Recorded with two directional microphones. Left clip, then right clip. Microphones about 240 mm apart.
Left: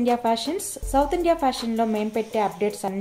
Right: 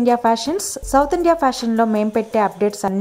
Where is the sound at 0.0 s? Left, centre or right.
Right.